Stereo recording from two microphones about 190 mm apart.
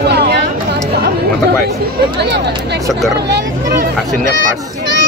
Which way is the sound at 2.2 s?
60° right (ahead or behind).